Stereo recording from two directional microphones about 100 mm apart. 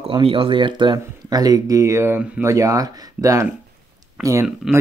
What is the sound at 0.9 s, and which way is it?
Speech, 40° right (ahead or behind).